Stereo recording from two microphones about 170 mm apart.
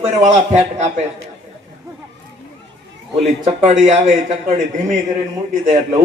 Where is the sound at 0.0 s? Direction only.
45° right (ahead or behind).